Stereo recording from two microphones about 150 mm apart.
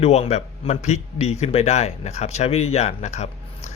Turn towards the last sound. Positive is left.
turn(degrees=50)  # may be behind; listen again after turning